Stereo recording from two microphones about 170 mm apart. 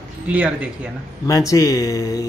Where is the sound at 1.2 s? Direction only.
20° left (ahead or behind).